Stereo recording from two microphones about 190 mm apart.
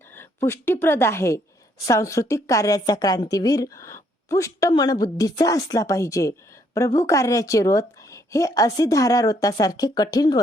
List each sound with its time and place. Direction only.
0.1 s a woman's voice: 10° left (ahead or behind)